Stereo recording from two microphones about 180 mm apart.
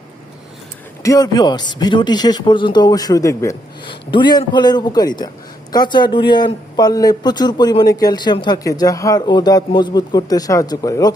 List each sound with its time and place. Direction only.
1.0 s speech: 20° left (ahead or behind)